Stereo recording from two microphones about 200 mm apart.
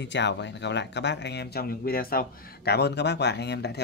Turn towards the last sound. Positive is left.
turn(degrees=55)  # may be behind; listen again after turning